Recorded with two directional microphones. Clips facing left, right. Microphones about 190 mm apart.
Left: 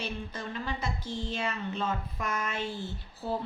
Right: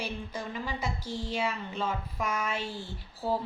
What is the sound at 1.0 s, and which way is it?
Speech, 20° left (ahead or behind).